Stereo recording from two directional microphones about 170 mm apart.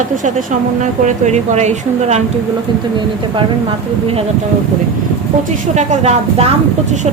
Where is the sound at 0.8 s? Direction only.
45° right (ahead or behind).